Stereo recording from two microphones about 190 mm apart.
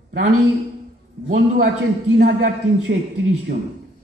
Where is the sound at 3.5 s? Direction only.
50° right (ahead or behind).